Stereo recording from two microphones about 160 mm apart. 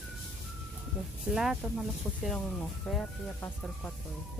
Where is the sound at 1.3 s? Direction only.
5° right (ahead or behind).